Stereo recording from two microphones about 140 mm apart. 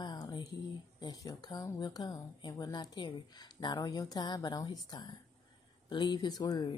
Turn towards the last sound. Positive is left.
turn(degrees=30)  # may be behind; listen again after turning